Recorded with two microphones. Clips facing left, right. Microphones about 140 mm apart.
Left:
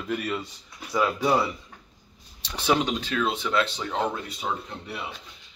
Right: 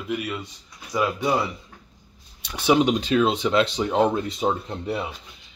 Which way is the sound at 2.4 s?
10° right (ahead or behind).